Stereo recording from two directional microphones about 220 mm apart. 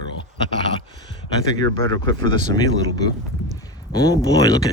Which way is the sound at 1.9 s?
20° left (ahead or behind).